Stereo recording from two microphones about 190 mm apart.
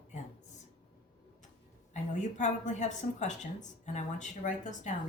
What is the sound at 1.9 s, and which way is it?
Speech, 40° left (ahead or behind).